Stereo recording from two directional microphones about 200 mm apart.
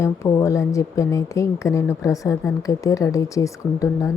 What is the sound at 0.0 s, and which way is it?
Speech, 15° left (ahead or behind).